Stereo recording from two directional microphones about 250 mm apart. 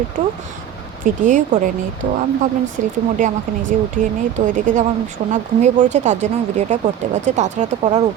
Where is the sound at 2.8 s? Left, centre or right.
Right.